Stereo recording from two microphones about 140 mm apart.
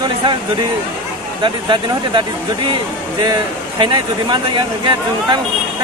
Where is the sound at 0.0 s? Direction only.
35° right (ahead or behind).